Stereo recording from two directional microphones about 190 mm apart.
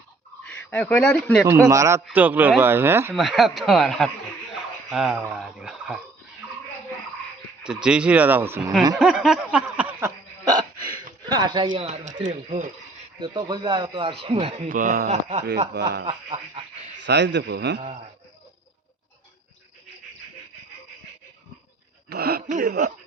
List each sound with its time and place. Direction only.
0.4 s speech: 5° left (ahead or behind)
1.5 s speech: 15° right (ahead or behind)
3.1 s speech: centre (ahead or behind)
7.6 s speech: 5° right (ahead or behind)
9.0 s a sound: 5° right (ahead or behind)
10.4 s hiccup: 20° right (ahead or behind)
11.3 s speech: 25° right (ahead or behind)
13.1 s speech: 25° right (ahead or behind)
14.7 s speech: 45° right (ahead or behind)
15.7 s speech: 60° right (ahead or behind)
16.0 s speech: 30° right (ahead or behind)
17.0 s a man's voice: 65° right (ahead or behind)
22.1 s speech: 55° right (ahead or behind)